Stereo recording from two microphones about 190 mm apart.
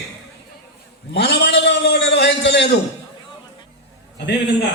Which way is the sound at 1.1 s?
65° left (ahead or behind).